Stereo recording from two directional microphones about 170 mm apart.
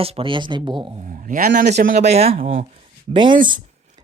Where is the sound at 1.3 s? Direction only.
55° right (ahead or behind).